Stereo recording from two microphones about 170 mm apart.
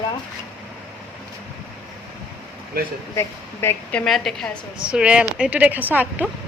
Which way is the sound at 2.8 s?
60° right (ahead or behind).